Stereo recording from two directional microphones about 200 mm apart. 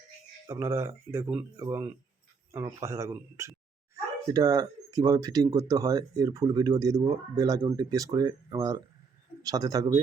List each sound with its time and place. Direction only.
0.4 s speech: 10° right (ahead or behind)